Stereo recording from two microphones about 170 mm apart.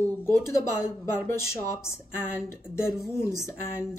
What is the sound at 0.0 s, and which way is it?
Speech, 15° left (ahead or behind).